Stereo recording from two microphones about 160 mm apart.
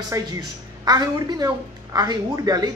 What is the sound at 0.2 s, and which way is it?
A woman's voice, 20° right (ahead or behind).